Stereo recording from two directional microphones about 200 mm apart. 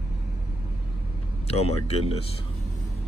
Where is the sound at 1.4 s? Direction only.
30° left (ahead or behind).